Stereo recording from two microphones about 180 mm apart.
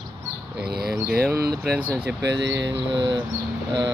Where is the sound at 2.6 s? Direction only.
80° right.